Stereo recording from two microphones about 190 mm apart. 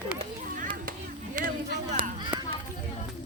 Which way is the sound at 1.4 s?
45° right (ahead or behind).